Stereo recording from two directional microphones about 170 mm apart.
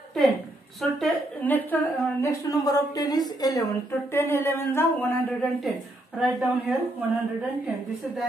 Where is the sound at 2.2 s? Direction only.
20° left (ahead or behind).